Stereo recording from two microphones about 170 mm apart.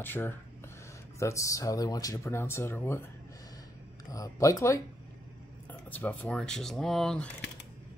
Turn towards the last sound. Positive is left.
turn(degrees=5)  # may be behind; listen again after turning